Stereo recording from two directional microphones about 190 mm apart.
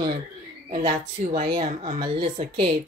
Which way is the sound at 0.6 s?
40° right (ahead or behind).